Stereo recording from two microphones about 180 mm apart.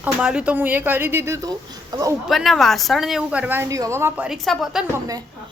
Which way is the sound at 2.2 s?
Centre (ahead or behind).